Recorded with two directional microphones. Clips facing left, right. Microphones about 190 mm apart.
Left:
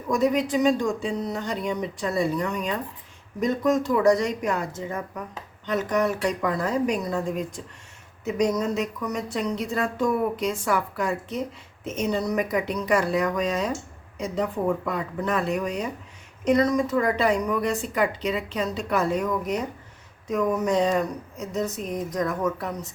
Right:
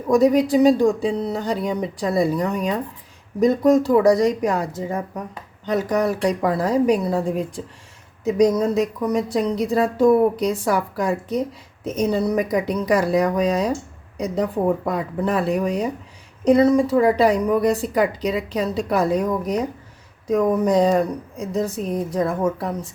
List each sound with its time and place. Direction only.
0.1 s speech: 35° right (ahead or behind)